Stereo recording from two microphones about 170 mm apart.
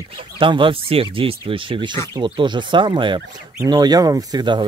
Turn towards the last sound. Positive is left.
turn(degrees=-25)  # may be behind; listen again after turning